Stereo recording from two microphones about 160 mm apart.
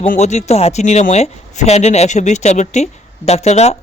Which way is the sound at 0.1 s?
45° left (ahead or behind).